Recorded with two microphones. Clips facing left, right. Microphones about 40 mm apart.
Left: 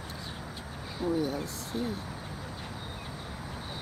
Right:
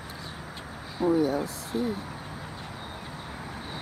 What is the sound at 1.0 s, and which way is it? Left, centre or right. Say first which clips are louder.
Speech: right 6 dB; centre.